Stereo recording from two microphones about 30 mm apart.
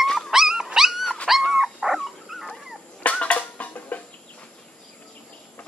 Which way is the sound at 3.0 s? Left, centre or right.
Left.